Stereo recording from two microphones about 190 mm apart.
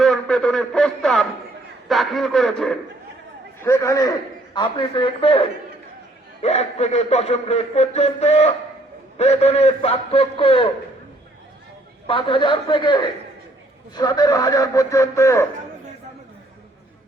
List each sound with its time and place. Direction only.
0.0 s a man's voice: 5° left (ahead or behind)
3.6 s a man's voice: 15° left (ahead or behind)
12.0 s a man's voice: 25° left (ahead or behind)